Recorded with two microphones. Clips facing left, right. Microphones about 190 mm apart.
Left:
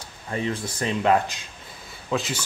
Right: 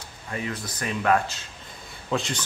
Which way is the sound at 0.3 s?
30° left (ahead or behind).